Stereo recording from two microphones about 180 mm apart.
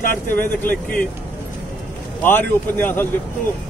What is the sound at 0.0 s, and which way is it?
Speech, 50° left (ahead or behind).